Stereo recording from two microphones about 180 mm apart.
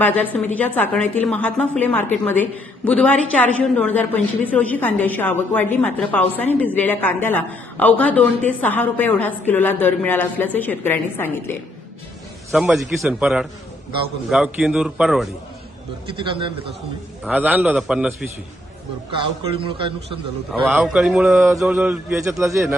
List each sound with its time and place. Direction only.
0.0 s a woman's voice: 10° left (ahead or behind)
12.5 s a man's voice: centre (ahead or behind)
17.2 s a man's voice: 10° right (ahead or behind)
19.1 s a man's voice: 30° right (ahead or behind)
20.7 s a man's voice: 5° right (ahead or behind)
22.4 s a man's voice: 15° right (ahead or behind)